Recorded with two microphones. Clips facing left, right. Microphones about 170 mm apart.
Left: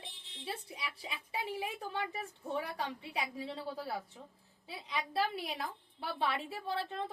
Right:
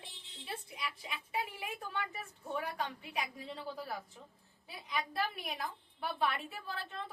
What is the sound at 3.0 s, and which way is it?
Speech, 30° left (ahead or behind).